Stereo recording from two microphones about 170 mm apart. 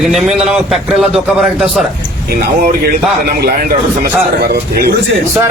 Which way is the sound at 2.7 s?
70° right (ahead or behind).